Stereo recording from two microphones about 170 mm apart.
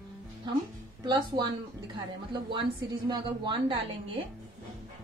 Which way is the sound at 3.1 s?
25° right (ahead or behind).